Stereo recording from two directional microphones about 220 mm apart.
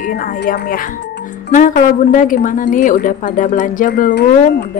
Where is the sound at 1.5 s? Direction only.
35° left (ahead or behind).